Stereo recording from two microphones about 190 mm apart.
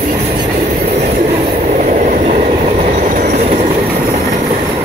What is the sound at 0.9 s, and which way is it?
Train, 35° right (ahead or behind).